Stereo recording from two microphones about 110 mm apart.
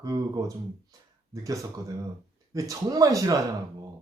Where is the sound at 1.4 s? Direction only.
30° right (ahead or behind).